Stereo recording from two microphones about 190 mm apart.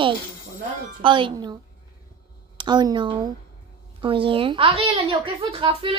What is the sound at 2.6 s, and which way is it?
A woman's voice, 25° right (ahead or behind).